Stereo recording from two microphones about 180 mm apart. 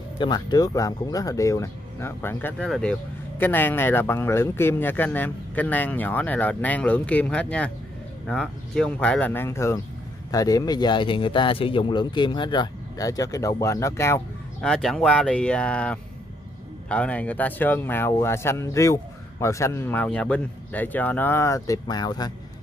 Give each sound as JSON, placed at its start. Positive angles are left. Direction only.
{"t": 0.2, "sound": "speech", "side_deg": 25}
{"t": 14.7, "sound": "speech", "side_deg": 0}